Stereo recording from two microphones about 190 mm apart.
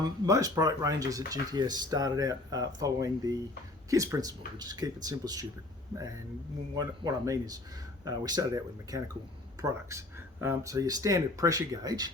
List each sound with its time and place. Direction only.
0.0 s speech: 20° right (ahead or behind)
6.7 s speech: 20° right (ahead or behind)